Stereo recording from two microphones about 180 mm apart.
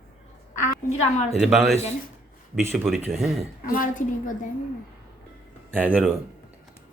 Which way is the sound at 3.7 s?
45° left (ahead or behind).